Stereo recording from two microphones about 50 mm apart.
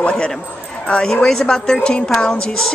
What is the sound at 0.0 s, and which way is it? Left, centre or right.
A woman's voice, centre.